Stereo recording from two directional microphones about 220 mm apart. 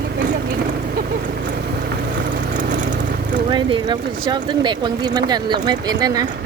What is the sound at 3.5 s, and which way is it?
Speech, 20° right (ahead or behind).